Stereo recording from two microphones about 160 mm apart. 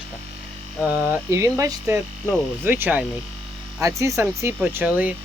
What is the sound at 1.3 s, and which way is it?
Speech, 20° right (ahead or behind).